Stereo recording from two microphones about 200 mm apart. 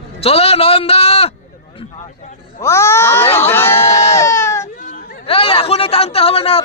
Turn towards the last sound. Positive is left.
turn(degrees=30)  # may be behind; listen again after turning